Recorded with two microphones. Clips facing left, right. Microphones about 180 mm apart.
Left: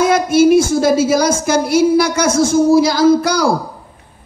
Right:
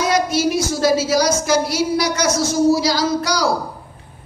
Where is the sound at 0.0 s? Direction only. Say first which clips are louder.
Left 7 dB; 55° left (ahead or behind).